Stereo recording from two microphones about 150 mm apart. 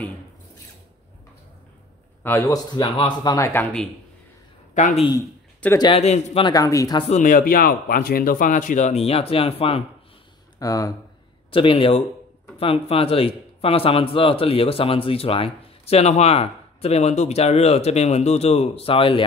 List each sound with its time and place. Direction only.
2.2 s speech: 20° left (ahead or behind)
4.7 s speech: 55° left (ahead or behind)
5.8 s speech: 40° left (ahead or behind)
6.4 s speech: 25° left (ahead or behind)
7.0 s speech: 50° left (ahead or behind)
10.6 s speech: 25° left (ahead or behind)
11.5 s speech: 35° left (ahead or behind)